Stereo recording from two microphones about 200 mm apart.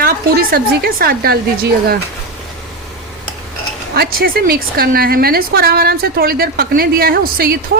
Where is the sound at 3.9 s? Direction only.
50° right (ahead or behind).